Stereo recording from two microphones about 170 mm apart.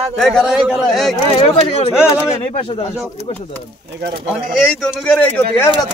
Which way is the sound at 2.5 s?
35° left (ahead or behind).